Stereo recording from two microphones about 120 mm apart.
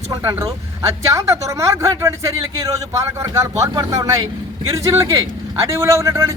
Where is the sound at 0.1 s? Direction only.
25° right (ahead or behind).